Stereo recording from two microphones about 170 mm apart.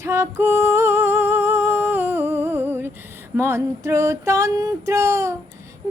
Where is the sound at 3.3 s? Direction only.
15° right (ahead or behind).